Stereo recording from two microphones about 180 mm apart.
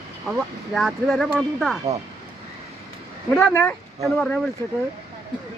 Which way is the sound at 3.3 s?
10° left (ahead or behind).